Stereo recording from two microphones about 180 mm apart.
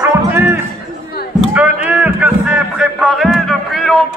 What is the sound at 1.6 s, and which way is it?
Music, 10° right (ahead or behind).